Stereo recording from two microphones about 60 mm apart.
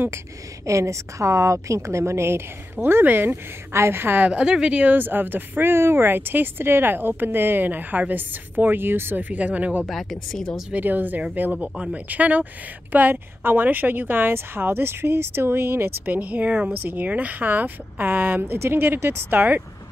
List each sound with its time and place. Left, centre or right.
0.7 s a woman's voice: right
2.8 s speech: right
3.7 s speech: right
4.2 s speech: centre
4.9 s speech: right
9.8 s speech: centre
10.7 s speech: right
16.1 s speech: right